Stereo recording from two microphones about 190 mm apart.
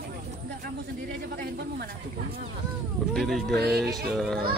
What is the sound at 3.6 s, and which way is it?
Speech, 60° right (ahead or behind).